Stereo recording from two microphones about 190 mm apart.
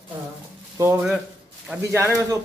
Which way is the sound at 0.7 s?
15° right (ahead or behind).